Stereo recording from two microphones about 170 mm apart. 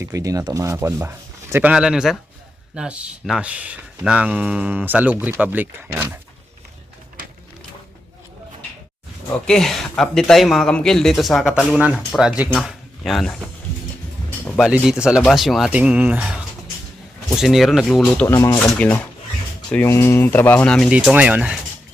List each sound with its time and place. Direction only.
0.0 s speech: 20° right (ahead or behind)
9.5 s speech: 5° left (ahead or behind)
14.4 s a sound: 5° left (ahead or behind)
14.7 s speech: 5° right (ahead or behind)
18.3 s speech: 20° left (ahead or behind)
18.6 s speech: 5° left (ahead or behind)